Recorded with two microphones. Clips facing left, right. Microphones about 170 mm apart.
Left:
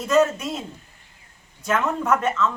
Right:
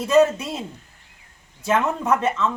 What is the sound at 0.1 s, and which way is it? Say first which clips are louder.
Speech: right 2 dB; 15° right (ahead or behind).